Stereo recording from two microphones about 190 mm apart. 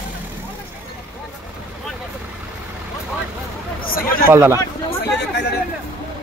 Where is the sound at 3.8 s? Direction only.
50° left (ahead or behind).